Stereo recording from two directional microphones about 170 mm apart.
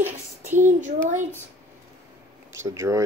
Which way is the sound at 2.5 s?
15° right (ahead or behind).